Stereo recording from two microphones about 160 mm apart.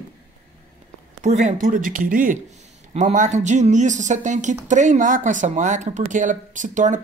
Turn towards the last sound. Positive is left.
turn(degrees=-50)  # may be behind; listen again after turning